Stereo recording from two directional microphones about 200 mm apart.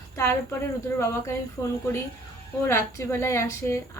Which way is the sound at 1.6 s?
15° left (ahead or behind).